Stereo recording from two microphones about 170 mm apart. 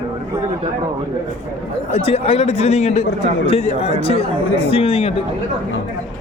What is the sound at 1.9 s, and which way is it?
A man's voice, 35° left (ahead or behind).